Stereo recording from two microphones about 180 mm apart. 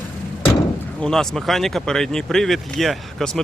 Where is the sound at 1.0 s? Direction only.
Centre (ahead or behind).